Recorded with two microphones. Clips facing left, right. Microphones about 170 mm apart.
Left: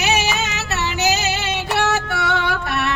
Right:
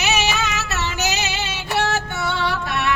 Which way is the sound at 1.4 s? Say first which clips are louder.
Left 2 dB; 60° left (ahead or behind).